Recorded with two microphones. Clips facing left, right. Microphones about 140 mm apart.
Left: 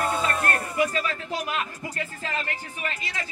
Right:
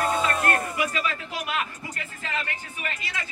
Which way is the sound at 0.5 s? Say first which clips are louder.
Left 2 dB; 35° left (ahead or behind).